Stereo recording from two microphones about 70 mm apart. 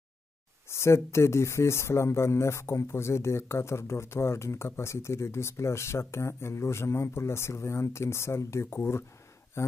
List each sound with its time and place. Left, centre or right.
0.7 s speech: left